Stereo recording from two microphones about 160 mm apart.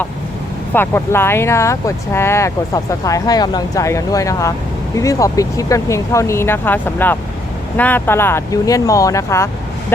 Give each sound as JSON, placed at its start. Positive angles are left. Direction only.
{"t": 0.7, "sound": "speech", "side_deg": 15}